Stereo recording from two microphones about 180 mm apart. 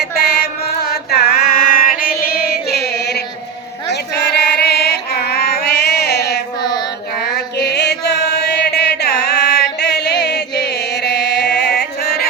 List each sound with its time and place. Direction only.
0.0 s chant: 60° left (ahead or behind)
2.2 s music: 55° left (ahead or behind)
6.6 s child singing: 20° left (ahead or behind)
7.3 s chant: 65° left (ahead or behind)